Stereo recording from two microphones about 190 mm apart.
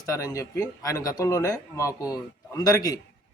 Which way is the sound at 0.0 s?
15° left (ahead or behind).